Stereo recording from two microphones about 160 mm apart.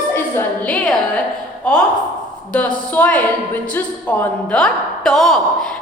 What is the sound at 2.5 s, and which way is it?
A woman's voice, 10° left (ahead or behind).